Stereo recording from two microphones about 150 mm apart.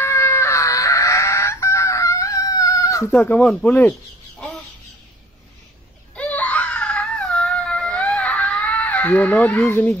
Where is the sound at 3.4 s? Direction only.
10° left (ahead or behind).